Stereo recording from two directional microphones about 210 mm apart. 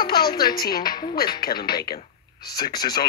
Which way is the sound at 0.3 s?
20° left (ahead or behind).